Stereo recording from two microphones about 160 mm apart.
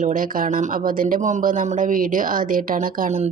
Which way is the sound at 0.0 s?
55° right (ahead or behind).